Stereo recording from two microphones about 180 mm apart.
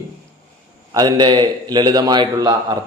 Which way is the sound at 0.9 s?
20° right (ahead or behind).